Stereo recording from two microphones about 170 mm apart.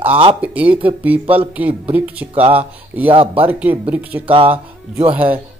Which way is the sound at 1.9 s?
10° right (ahead or behind).